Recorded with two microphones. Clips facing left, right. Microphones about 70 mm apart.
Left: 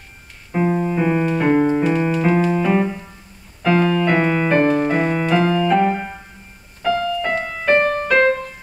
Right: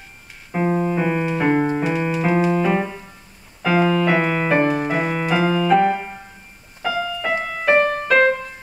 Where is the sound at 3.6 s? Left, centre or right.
Centre.